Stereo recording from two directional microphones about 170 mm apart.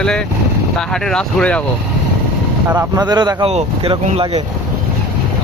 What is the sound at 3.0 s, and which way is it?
Speech, 25° right (ahead or behind).